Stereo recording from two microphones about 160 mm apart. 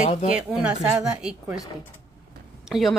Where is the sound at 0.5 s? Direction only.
5° right (ahead or behind).